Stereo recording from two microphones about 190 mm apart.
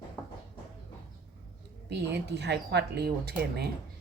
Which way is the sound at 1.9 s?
65° right (ahead or behind).